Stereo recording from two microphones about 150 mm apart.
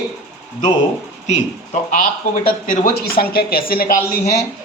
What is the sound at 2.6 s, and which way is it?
Speech, 90° left.